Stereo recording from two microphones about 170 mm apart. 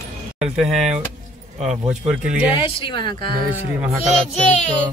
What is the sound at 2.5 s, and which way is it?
Speech, 30° left (ahead or behind).